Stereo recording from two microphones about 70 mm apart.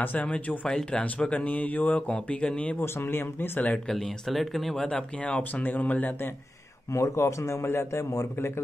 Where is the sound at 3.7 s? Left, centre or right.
Centre; by 6.3 s left.